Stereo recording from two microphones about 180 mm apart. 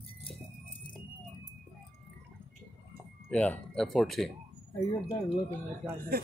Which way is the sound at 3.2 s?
10° left (ahead or behind).